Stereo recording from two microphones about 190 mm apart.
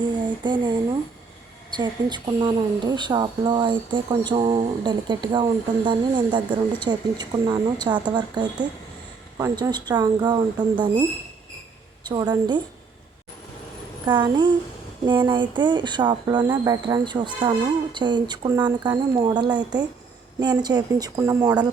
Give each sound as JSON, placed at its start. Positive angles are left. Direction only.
{"t": 0.4, "sound": "a woman's voice", "side_deg": -25}
{"t": 1.7, "sound": "a woman's voice", "side_deg": -25}
{"t": 12.0, "sound": "a woman's voice", "side_deg": -20}
{"t": 14.1, "sound": "a woman's voice", "side_deg": -25}